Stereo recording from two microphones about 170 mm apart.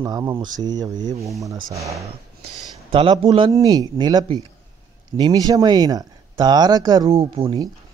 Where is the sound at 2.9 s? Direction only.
30° right (ahead or behind).